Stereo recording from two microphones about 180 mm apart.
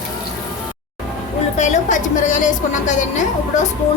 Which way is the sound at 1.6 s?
40° left (ahead or behind).